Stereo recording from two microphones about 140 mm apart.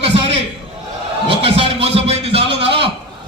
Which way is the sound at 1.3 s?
45° right (ahead or behind).